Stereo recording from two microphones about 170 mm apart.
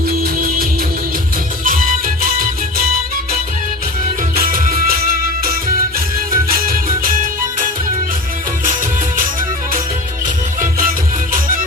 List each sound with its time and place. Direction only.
0.2 s music: 60° right (ahead or behind)
4.4 s music: 55° right (ahead or behind)
10.2 s music: 50° right (ahead or behind)